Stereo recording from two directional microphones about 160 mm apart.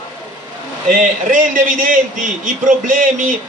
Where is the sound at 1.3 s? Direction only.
55° right (ahead or behind).